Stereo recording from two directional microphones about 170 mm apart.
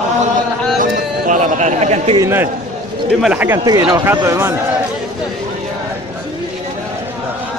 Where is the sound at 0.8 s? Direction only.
45° right (ahead or behind).